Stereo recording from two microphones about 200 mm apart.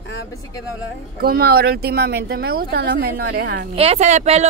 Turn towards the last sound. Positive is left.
turn(degrees=-35)  # may be behind; listen again after turning